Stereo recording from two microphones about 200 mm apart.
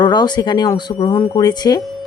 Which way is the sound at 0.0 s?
20° left (ahead or behind).